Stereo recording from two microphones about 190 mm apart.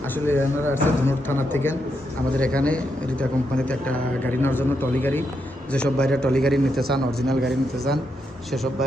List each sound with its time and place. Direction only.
0.3 s a man's voice: 10° left (ahead or behind)